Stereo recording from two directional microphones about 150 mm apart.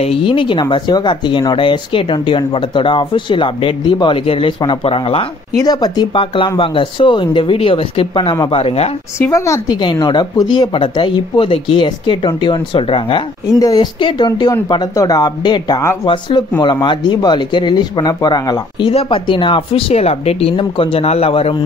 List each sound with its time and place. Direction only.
0.0 s speech: 40° left (ahead or behind)
5.6 s speech: 25° left (ahead or behind); by 8.9 s 40° left (ahead or behind)
9.2 s speech: 20° left (ahead or behind); by 21.5 s 40° left (ahead or behind)